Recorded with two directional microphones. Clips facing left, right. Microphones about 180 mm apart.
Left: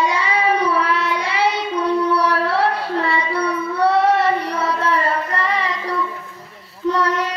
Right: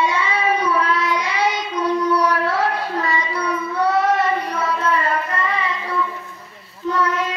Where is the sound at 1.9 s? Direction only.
30° left (ahead or behind).